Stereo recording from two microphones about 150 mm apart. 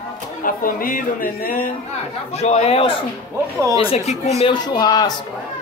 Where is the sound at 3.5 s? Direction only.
25° right (ahead or behind).